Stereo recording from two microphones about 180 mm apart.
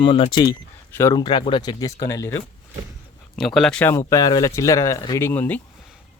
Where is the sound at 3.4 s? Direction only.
Centre (ahead or behind).